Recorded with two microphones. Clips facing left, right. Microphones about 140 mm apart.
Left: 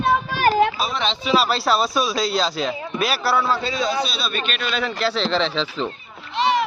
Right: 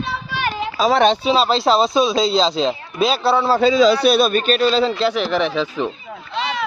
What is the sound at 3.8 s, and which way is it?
A man's voice, 75° right (ahead or behind).